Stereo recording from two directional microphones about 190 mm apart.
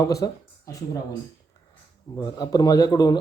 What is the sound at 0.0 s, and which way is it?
Speech, 15° left (ahead or behind).